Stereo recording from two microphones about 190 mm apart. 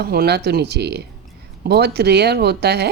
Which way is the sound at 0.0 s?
55° right (ahead or behind).